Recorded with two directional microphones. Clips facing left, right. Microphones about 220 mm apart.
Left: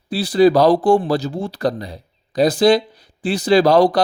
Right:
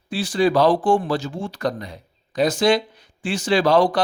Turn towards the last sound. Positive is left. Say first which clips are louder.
# left 4 dB
turn(degrees=40)  # may be behind; listen again after turning